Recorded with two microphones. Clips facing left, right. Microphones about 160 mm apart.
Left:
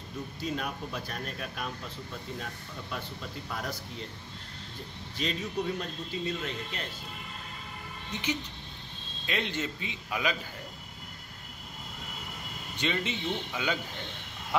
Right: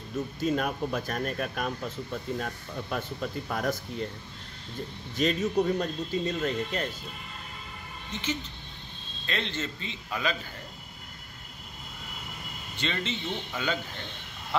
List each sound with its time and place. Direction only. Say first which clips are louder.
0.4 s speech: right 7 dB; 50° right (ahead or behind)
5.1 s speech: right 7 dB; 45° right (ahead or behind)
8.1 s a man's voice: even; 15° left (ahead or behind)
12.7 s a man's voice: left 1 dB; 15° left (ahead or behind)